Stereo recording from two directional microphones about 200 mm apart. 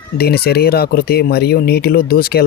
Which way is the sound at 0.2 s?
50° left (ahead or behind).